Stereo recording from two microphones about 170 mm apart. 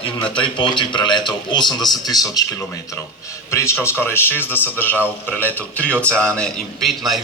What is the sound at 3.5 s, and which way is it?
A man's voice, 15° left (ahead or behind).